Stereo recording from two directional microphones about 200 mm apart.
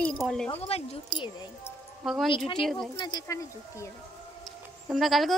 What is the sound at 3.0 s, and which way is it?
Speech, 20° left (ahead or behind).